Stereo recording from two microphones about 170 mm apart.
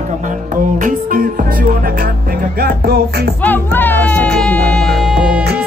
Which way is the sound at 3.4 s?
10° left (ahead or behind).